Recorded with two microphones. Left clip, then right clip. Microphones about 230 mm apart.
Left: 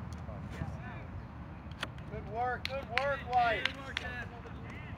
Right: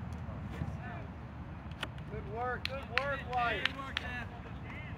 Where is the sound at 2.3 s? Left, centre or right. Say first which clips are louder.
Left 3 dB; left.